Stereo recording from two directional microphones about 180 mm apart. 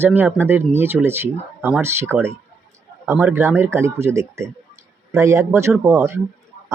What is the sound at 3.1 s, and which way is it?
Speech, 10° right (ahead or behind).